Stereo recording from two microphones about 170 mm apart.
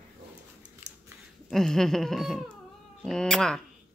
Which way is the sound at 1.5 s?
Centre (ahead or behind).